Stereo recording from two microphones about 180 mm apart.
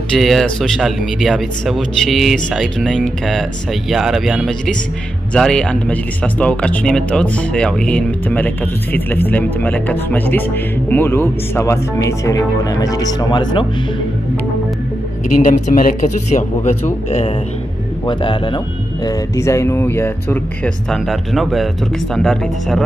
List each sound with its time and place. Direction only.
0.1 s speech: centre (ahead or behind); by 13.7 s 25° left (ahead or behind)
15.4 s a man's voice: 45° left (ahead or behind); by 18.6 s 25° left (ahead or behind)
19.0 s speech: 15° left (ahead or behind)